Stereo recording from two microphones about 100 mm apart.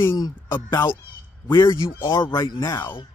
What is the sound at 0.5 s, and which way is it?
Speech, 25° left (ahead or behind).